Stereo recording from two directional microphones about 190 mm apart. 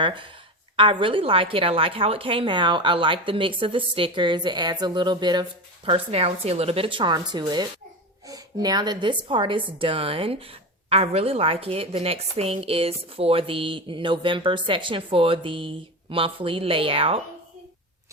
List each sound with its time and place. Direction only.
0.0 s a woman's voice: 25° right (ahead or behind)